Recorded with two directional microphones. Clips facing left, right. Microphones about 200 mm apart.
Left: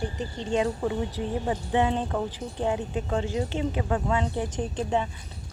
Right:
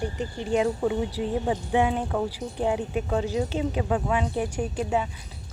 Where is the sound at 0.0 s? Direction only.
10° right (ahead or behind).